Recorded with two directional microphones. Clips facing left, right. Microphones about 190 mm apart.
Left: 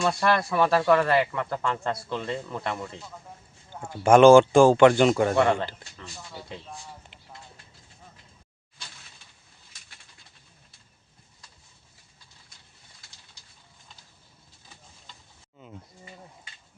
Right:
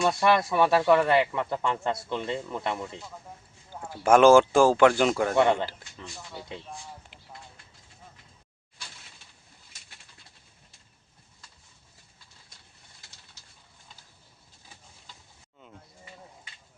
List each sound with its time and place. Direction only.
0.2 s speech: 15° right (ahead or behind); by 5.4 s centre (ahead or behind)
5.5 s speech: 10° right (ahead or behind)
15.6 s a sound: centre (ahead or behind)